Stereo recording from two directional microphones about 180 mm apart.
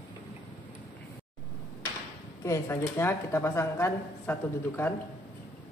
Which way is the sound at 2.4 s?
15° left (ahead or behind).